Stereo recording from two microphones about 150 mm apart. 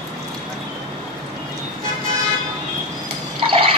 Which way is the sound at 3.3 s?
40° right (ahead or behind).